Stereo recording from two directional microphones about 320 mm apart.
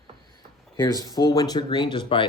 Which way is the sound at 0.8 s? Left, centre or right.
Centre.